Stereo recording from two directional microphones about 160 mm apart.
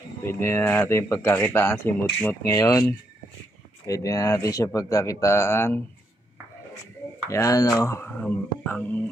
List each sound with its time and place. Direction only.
0.3 s speech: 15° left (ahead or behind)
7.2 s speech: 20° left (ahead or behind)